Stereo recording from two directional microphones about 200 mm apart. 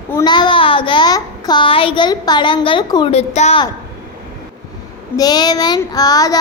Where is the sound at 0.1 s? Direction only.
20° left (ahead or behind).